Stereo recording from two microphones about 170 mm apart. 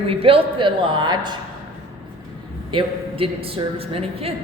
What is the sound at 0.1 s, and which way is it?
Speech, 35° right (ahead or behind).